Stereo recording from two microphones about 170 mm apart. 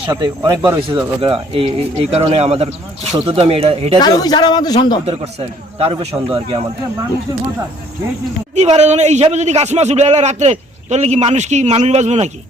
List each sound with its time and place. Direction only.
0.0 s a man's voice: 25° right (ahead or behind)
4.0 s a man's voice: 25° left (ahead or behind)
5.0 s a man's voice: 35° right (ahead or behind)
8.5 s a man's voice: 40° right (ahead or behind)